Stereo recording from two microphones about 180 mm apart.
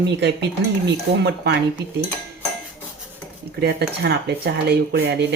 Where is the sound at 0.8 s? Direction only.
70° right (ahead or behind).